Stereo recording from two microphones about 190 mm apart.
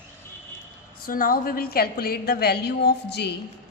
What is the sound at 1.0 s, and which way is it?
A woman's voice, 50° left (ahead or behind).